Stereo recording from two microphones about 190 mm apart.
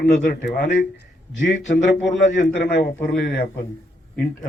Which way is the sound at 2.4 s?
65° left (ahead or behind).